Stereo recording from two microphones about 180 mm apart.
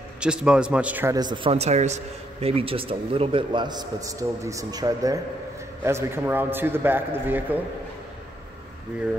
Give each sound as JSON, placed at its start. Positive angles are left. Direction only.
{"t": 0.2, "sound": "a man's voice", "side_deg": -5}